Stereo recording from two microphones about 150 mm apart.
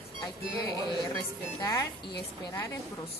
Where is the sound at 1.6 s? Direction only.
25° left (ahead or behind).